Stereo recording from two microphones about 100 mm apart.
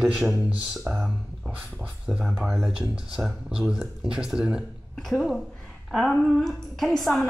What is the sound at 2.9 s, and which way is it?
A woman's voice, 5° right (ahead or behind).